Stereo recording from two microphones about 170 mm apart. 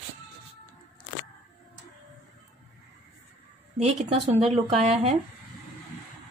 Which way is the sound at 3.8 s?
40° right (ahead or behind).